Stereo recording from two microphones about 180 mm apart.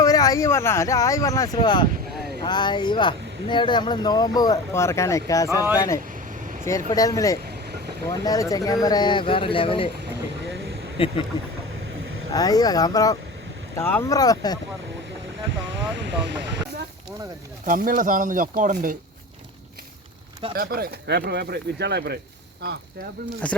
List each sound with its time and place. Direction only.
0.0 s speech: 20° left (ahead or behind)
10.5 s a sound: 65° right (ahead or behind)
11.0 s speech: 30° left (ahead or behind)
12.3 s speech: 20° left (ahead or behind)
16.0 s speech: 75° right (ahead or behind)
17.7 s speech: 45° right (ahead or behind)
20.6 s speech: 55° right (ahead or behind)
23.4 s speech: 5° left (ahead or behind)